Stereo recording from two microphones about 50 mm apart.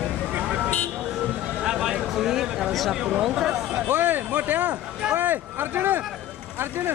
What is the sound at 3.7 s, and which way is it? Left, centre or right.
Speech, right.